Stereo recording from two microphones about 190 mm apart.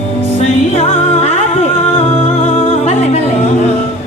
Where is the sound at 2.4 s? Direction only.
30° left (ahead or behind).